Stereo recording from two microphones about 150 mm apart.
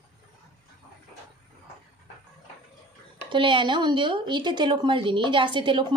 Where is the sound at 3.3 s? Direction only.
35° right (ahead or behind).